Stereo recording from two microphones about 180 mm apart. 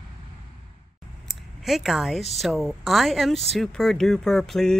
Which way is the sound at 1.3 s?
Centre (ahead or behind).